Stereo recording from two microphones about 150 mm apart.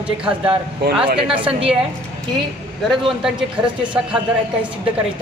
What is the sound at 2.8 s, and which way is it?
A man's voice, 5° right (ahead or behind).